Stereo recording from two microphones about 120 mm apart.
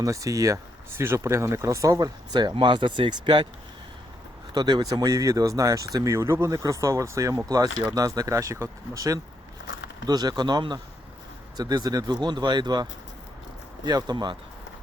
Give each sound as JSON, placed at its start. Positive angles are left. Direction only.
{"t": 0.0, "sound": "speech", "side_deg": -30}
{"t": 4.5, "sound": "speech", "side_deg": -35}